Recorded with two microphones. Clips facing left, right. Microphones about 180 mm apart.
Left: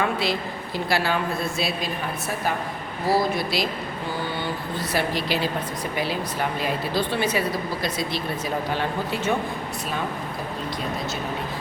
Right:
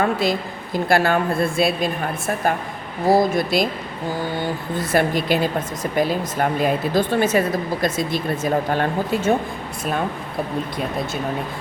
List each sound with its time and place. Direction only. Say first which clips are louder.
0.0 s a woman's voice: right 4 dB; 45° right (ahead or behind)
4.8 s a woman's voice: right 7 dB; 50° right (ahead or behind)